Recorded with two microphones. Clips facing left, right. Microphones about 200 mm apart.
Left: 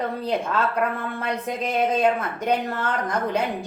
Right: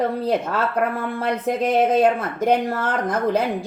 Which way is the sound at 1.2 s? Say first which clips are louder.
Right 7 dB; 50° right (ahead or behind).